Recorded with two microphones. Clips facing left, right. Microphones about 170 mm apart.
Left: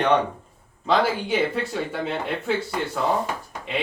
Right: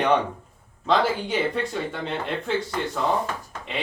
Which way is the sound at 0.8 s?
5° left (ahead or behind).